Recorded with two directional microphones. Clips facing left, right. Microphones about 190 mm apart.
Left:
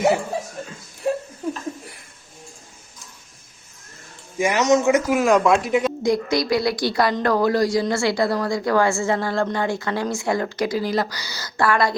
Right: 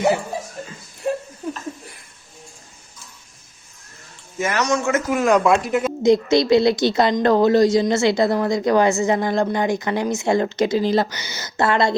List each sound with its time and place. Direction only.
4.4 s speech: 15° left (ahead or behind)
5.1 s speech: centre (ahead or behind)
6.0 s a woman's voice: 25° right (ahead or behind)